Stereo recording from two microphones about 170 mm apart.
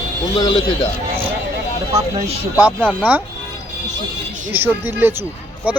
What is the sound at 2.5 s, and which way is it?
Speech, 10° right (ahead or behind).